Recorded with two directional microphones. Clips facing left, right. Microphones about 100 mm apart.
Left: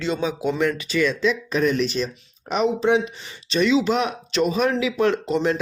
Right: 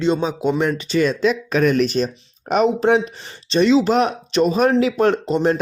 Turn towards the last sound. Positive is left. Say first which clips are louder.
# right 3 dB
turn(degrees=-45)  # may be behind; listen again after turning